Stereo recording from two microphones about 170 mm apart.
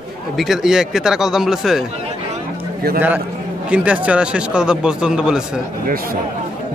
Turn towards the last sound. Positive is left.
turn(degrees=-60)  # may be behind; listen again after turning